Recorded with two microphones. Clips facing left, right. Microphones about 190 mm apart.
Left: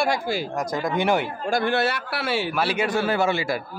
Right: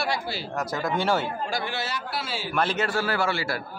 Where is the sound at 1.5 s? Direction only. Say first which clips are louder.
Left 8 dB; 55° left (ahead or behind).